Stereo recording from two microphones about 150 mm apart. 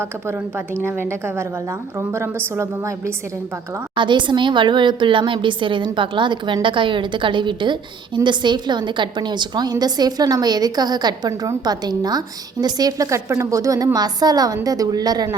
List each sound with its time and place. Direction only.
0.0 s a woman's voice: 15° right (ahead or behind)
3.9 s a woman's voice: 30° right (ahead or behind)